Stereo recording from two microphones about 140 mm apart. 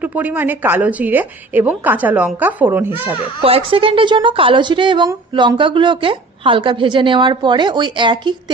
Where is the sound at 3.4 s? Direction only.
45° right (ahead or behind).